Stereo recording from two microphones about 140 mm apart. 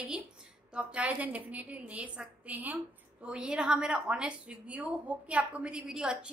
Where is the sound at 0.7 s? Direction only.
10° right (ahead or behind).